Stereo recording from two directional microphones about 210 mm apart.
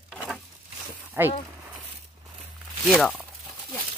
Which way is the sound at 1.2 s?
10° right (ahead or behind).